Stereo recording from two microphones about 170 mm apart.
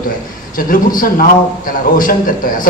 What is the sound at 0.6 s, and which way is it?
A man's voice, 55° left (ahead or behind).